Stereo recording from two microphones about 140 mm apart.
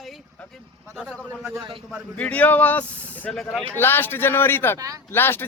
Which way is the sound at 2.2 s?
10° left (ahead or behind).